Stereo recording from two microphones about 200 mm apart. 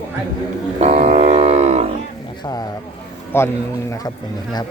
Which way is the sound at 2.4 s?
20° left (ahead or behind).